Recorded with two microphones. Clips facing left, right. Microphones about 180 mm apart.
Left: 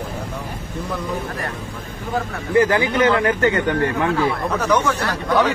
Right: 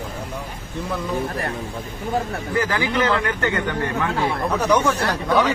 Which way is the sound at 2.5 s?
20° left (ahead or behind).